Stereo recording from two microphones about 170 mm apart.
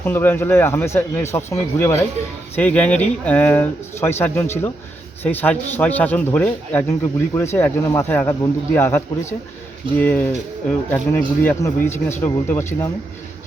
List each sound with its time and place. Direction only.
0.0 s speech: 10° left (ahead or behind)